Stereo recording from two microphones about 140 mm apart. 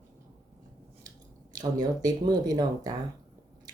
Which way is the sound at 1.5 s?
30° right (ahead or behind).